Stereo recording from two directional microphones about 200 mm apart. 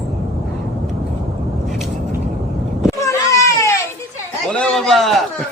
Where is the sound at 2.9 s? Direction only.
15° left (ahead or behind).